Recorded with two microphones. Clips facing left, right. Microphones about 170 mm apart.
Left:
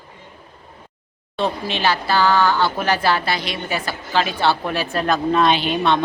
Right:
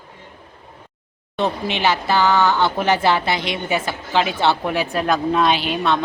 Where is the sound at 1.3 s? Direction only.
20° right (ahead or behind).